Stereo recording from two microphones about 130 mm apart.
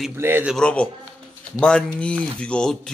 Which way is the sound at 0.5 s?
10° left (ahead or behind).